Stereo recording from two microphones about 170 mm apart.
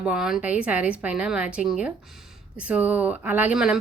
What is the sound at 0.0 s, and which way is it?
A woman's voice, 5° right (ahead or behind).